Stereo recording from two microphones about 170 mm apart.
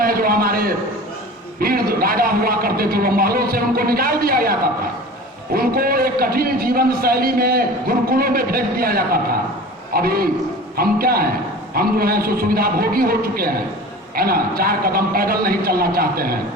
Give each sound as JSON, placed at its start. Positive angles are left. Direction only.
{"t": 0.0, "sound": "a man's voice", "side_deg": -60}